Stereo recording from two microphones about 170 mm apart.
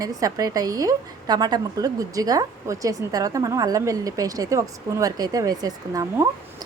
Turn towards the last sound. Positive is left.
turn(degrees=-20)  # may be behind; listen again after turning